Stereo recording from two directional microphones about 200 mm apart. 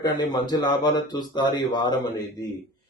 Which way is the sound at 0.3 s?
20° left (ahead or behind).